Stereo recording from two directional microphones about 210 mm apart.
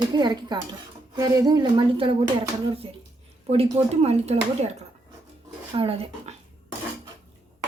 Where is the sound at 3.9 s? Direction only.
30° right (ahead or behind).